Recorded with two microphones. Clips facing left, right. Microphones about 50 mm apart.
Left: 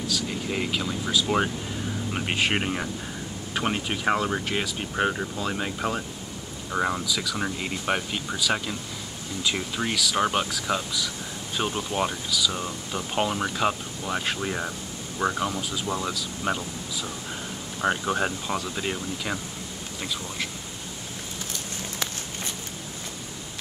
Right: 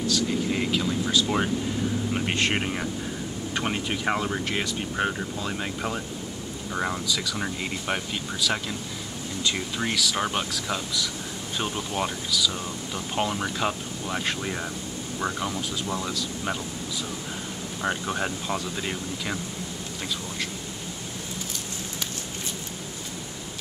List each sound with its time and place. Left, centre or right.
0.0 s speech: centre
17.8 s speech: centre